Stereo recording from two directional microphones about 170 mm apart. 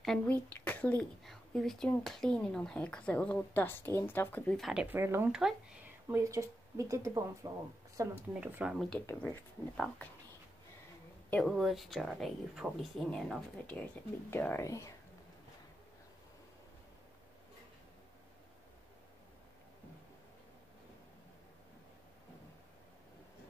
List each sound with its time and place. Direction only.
0.0 s speech: 5° left (ahead or behind)
4.8 s speech: 15° right (ahead or behind)
6.0 s speech: 15° right (ahead or behind)
9.0 s speech: 15° left (ahead or behind)
11.2 s speech: 5° left (ahead or behind)